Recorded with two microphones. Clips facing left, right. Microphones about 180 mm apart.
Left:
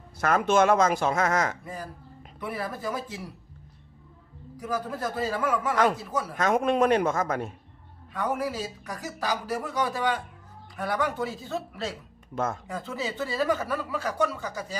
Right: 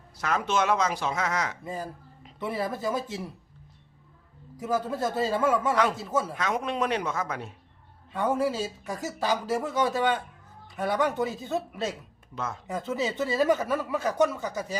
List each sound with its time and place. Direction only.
0.2 s speech: 50° left (ahead or behind)
1.6 s speech: 25° right (ahead or behind)
4.5 s speech: 25° right (ahead or behind)
5.7 s speech: 45° left (ahead or behind)
6.0 s speech: 25° right (ahead or behind)
6.3 s speech: 50° left (ahead or behind)
8.1 s speech: 25° right (ahead or behind)
12.3 s speech: 50° left (ahead or behind)
12.6 s speech: 20° right (ahead or behind)